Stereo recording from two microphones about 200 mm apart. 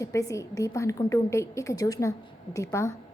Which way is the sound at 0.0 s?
15° left (ahead or behind).